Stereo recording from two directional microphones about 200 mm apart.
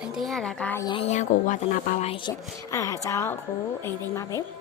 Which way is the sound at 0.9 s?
30° left (ahead or behind).